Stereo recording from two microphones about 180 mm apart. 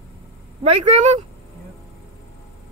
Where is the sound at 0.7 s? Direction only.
35° right (ahead or behind).